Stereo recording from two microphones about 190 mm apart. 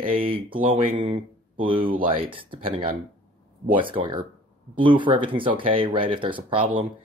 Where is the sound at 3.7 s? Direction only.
25° right (ahead or behind).